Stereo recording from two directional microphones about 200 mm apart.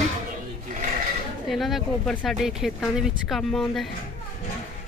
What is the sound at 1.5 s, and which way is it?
Speech, centre (ahead or behind).